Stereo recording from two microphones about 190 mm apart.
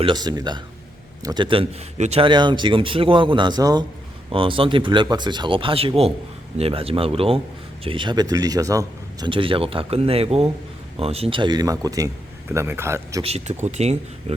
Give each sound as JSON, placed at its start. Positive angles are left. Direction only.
{"t": 0.0, "sound": "a man's voice", "side_deg": -20}
{"t": 13.2, "sound": "speech", "side_deg": -35}